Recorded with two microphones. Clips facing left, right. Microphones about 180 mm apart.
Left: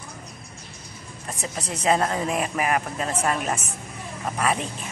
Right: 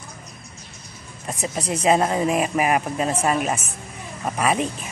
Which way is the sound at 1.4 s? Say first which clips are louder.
Right 5 dB; 15° right (ahead or behind).